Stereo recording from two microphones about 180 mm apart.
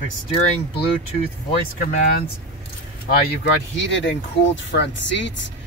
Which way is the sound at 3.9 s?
80° left.